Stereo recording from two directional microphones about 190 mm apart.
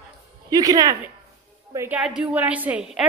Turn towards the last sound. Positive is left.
turn(degrees=-5)  # may be behind; listen again after turning